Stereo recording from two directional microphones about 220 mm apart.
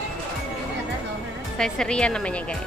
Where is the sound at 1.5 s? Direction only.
5° left (ahead or behind).